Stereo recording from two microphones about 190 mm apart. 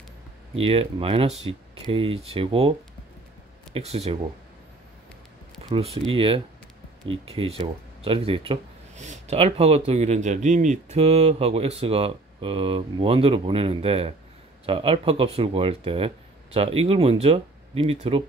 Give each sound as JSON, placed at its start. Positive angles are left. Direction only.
{"t": 0.6, "sound": "speech", "side_deg": -30}
{"t": 3.7, "sound": "speech", "side_deg": -35}
{"t": 5.7, "sound": "speech", "side_deg": -30}